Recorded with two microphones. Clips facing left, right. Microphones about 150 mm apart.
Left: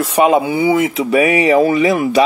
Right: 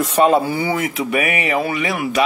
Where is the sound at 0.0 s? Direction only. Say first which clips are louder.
Left 2 dB; 10° left (ahead or behind).